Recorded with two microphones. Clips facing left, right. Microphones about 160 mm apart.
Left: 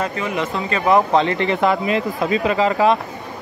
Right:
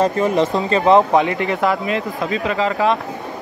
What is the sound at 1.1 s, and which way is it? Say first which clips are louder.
Speech: right 1 dB; 10° right (ahead or behind).